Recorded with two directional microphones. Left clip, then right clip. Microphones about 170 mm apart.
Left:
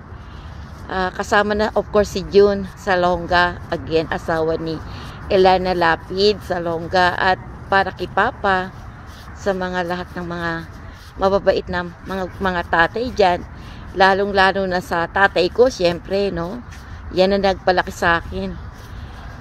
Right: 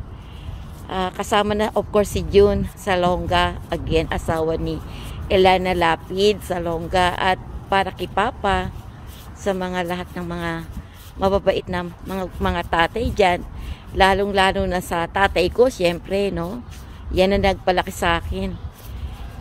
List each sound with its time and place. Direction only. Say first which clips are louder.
0.8 s speech: left 2 dB; 20° right (ahead or behind)